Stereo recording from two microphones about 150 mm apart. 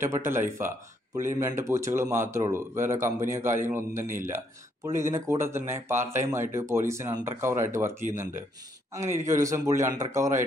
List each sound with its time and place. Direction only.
0.0 s a man's voice: 15° right (ahead or behind)